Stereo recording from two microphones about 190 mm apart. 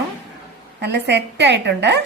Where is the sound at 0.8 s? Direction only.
65° right (ahead or behind).